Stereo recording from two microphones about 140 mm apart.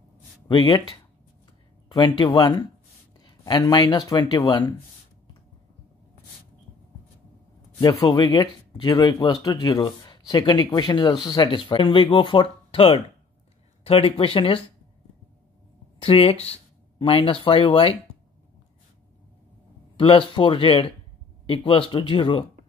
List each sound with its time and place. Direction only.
0.5 s speech: 30° left (ahead or behind)
7.8 s speech: 25° left (ahead or behind)
16.0 s speech: 45° left (ahead or behind)
20.0 s speech: 40° left (ahead or behind)